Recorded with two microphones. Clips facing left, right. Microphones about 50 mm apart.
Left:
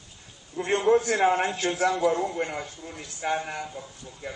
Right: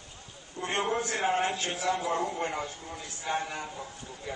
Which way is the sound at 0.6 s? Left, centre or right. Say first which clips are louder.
Left 5 dB; left.